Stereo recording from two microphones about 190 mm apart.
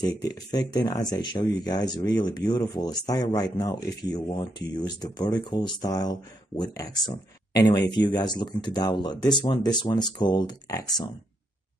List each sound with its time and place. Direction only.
0.3 s speech: 20° left (ahead or behind)